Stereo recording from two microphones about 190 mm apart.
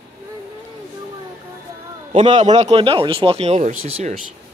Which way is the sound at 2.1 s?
35° right (ahead or behind).